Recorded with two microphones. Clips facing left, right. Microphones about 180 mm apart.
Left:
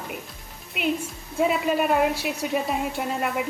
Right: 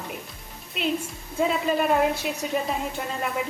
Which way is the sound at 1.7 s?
5° left (ahead or behind).